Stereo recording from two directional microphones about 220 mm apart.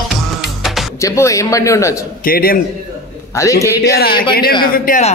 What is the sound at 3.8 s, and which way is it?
A man's voice, 45° left (ahead or behind).